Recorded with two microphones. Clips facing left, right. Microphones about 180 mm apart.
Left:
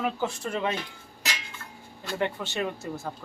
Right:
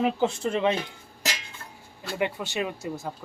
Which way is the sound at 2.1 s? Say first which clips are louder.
Right 1 dB; 10° right (ahead or behind).